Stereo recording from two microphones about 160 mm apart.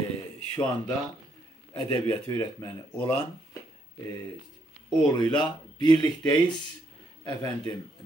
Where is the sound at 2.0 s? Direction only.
15° left (ahead or behind).